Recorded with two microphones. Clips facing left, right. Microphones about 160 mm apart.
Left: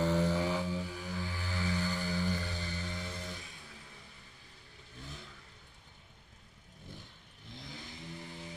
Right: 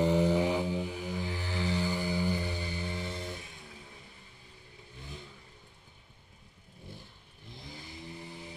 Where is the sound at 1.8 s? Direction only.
15° right (ahead or behind).